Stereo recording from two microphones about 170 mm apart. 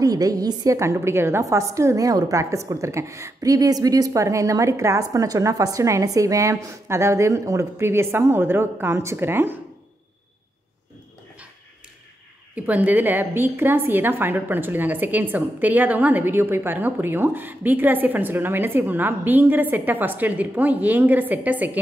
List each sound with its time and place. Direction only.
0.0 s a woman's voice: 20° right (ahead or behind)
12.5 s a woman's voice: 10° right (ahead or behind)